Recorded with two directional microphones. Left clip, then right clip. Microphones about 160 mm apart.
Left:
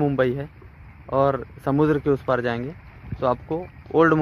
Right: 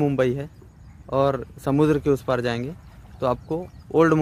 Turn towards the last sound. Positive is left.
turn(degrees=-15)  # may be behind; listen again after turning